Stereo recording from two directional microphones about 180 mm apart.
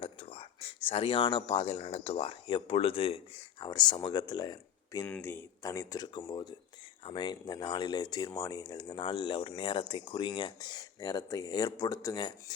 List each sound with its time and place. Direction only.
0.0 s speech: 30° left (ahead or behind)
5.0 s speech: 10° left (ahead or behind)